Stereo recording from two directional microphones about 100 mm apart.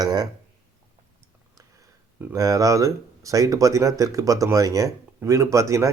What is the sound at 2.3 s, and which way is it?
Speech, 35° right (ahead or behind).